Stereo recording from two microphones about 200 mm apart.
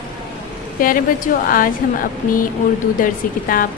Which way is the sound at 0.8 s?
45° left (ahead or behind).